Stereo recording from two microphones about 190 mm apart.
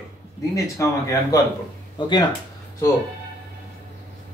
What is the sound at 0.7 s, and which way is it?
Speech, 15° left (ahead or behind).